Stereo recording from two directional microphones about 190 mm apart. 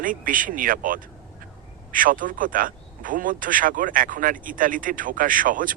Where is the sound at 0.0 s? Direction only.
45° right (ahead or behind).